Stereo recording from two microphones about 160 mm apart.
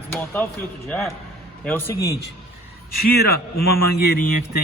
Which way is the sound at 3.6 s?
75° left (ahead or behind).